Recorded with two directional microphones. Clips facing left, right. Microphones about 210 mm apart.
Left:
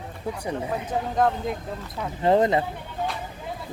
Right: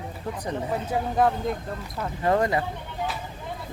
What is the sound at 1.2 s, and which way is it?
Speech, centre (ahead or behind).